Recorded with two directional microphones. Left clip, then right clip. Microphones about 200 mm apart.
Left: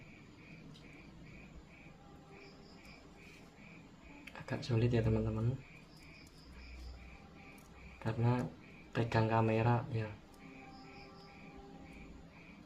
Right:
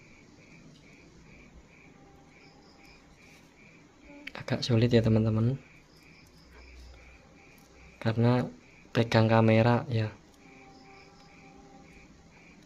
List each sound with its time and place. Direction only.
4.3 s speech: 50° right (ahead or behind)
7.9 s speech: 55° right (ahead or behind)